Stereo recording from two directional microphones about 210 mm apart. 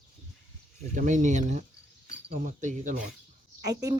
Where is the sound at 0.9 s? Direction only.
35° right (ahead or behind).